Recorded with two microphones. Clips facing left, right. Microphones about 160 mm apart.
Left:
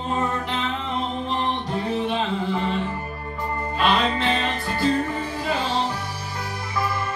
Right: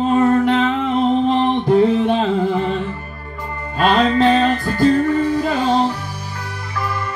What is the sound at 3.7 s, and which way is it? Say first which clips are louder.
Music: right 7 dB; 45° right (ahead or behind).